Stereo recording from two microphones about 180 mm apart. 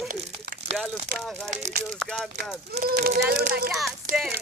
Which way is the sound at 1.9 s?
Centre (ahead or behind).